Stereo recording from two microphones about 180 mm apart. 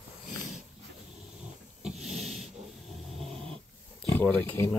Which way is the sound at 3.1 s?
Centre (ahead or behind).